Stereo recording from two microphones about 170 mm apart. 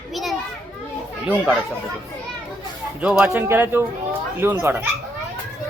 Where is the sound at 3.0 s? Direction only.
5° right (ahead or behind).